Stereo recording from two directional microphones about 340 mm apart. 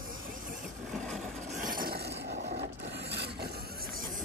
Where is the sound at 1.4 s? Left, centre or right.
Right.